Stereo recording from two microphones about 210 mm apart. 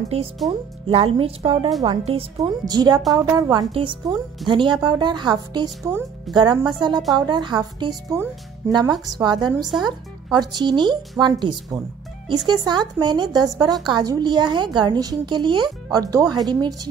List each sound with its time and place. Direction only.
0.5 s a woman's voice: 25° right (ahead or behind)